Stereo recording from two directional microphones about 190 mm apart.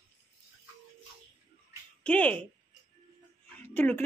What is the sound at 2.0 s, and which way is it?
Speech, 5° left (ahead or behind).